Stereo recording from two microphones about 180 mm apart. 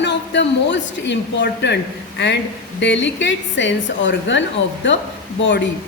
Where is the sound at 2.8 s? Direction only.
90° left.